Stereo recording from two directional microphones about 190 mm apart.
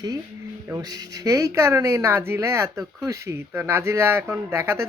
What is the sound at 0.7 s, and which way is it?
Speech, 20° right (ahead or behind).